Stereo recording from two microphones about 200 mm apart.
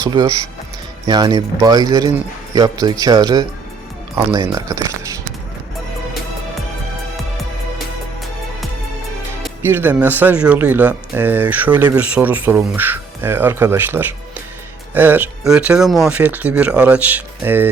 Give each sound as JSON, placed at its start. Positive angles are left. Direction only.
{"t": 0.0, "sound": "speech", "side_deg": -20}
{"t": 9.6, "sound": "speech", "side_deg": -10}